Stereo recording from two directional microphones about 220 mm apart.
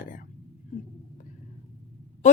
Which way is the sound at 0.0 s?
40° left (ahead or behind).